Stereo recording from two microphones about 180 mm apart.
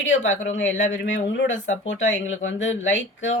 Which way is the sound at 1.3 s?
80° left.